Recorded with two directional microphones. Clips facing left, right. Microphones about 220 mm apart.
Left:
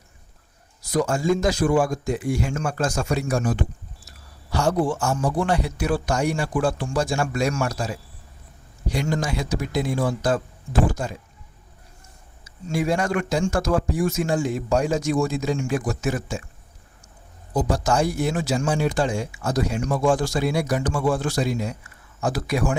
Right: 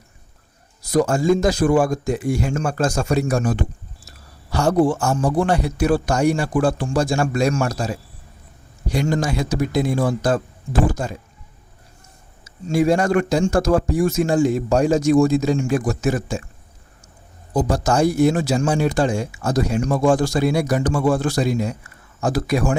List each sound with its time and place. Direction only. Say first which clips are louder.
0.9 s a man's voice: right 4 dB; 40° right (ahead or behind)
5.0 s a man's voice: right 4 dB; 35° right (ahead or behind)
12.7 s speech: right 6 dB; 40° right (ahead or behind)
17.5 s speech: right 3 dB; 40° right (ahead or behind)